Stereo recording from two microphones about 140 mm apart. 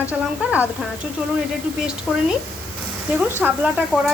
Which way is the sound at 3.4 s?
10° right (ahead or behind).